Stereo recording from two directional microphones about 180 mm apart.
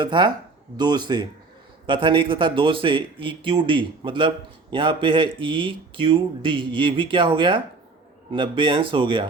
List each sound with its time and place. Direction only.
0.0 s speech: 25° right (ahead or behind)